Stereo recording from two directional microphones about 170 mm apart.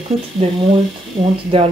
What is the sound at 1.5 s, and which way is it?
Speech, 30° right (ahead or behind).